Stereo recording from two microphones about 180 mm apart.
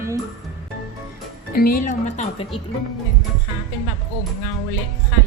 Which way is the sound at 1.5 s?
55° left (ahead or behind).